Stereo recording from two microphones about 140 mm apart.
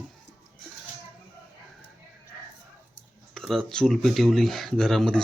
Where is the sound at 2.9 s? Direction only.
5° left (ahead or behind).